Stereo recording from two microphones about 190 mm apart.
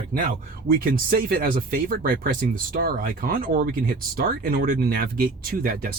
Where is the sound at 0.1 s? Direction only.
45° right (ahead or behind).